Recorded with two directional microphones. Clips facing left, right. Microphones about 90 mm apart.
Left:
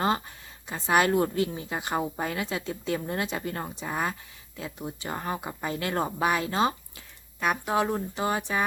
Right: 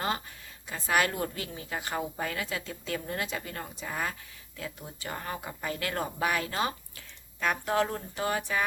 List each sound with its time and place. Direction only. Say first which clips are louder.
0.7 s speech: left 5 dB; 25° left (ahead or behind)